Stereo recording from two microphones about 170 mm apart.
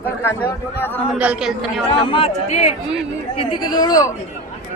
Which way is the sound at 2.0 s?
35° left (ahead or behind).